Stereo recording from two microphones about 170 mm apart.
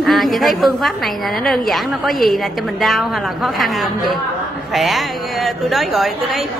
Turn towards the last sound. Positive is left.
turn(degrees=0)  # may be behind; listen again after turning